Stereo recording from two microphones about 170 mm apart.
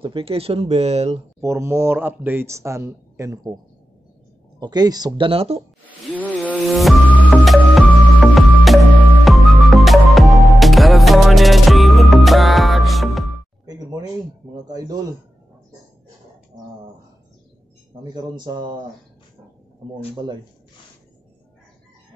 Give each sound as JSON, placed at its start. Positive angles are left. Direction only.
{"t": 0.0, "sound": "speech", "side_deg": -35}
{"t": 1.4, "sound": "a man's voice", "side_deg": -15}
{"t": 4.6, "sound": "speech", "side_deg": -25}
{"t": 6.1, "sound": "music", "side_deg": 10}
{"t": 18.1, "sound": "speech", "side_deg": -25}